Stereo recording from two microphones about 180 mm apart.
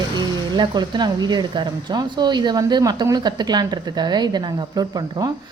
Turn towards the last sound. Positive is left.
turn(degrees=-20)  # may be behind; listen again after turning